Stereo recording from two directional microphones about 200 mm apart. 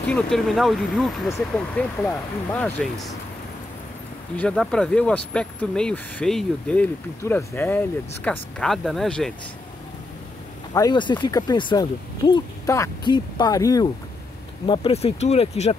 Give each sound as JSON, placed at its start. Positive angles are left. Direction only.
{"t": 0.0, "sound": "speech", "side_deg": 5}
{"t": 4.4, "sound": "speech", "side_deg": 5}
{"t": 10.7, "sound": "speech", "side_deg": 20}
{"t": 14.7, "sound": "speech", "side_deg": 30}